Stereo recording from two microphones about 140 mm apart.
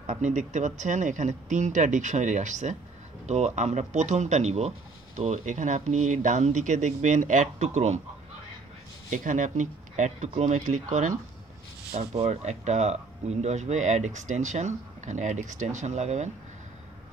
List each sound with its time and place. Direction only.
0.0 s speech: 60° right (ahead or behind)
9.1 s speech: 65° right (ahead or behind)
12.1 s speech: 50° right (ahead or behind)